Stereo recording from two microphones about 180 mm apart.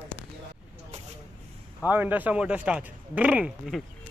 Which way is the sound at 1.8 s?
10° right (ahead or behind).